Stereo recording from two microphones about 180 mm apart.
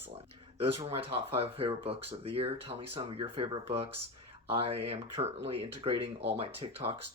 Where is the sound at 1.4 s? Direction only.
35° right (ahead or behind).